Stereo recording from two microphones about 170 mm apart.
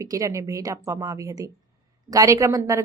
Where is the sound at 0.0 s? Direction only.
20° right (ahead or behind).